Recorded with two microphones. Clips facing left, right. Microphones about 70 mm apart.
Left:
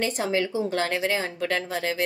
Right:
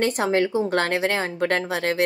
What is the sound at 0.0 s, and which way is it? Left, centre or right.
Speech, right.